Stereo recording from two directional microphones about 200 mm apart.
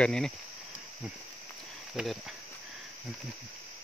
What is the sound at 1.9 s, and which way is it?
Speech, centre (ahead or behind).